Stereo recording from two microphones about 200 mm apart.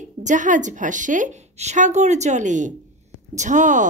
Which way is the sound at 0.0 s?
40° right (ahead or behind).